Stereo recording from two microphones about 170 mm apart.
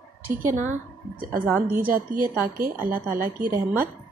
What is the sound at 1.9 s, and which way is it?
Speech, 55° right (ahead or behind).